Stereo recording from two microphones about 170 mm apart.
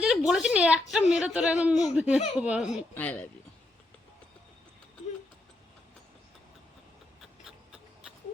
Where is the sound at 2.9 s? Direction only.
10° left (ahead or behind).